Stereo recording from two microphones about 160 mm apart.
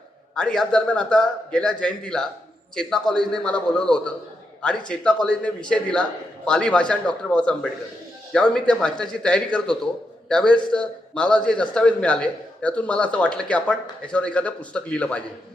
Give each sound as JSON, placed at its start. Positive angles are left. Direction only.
{"t": 0.3, "sound": "a man's voice", "side_deg": 5}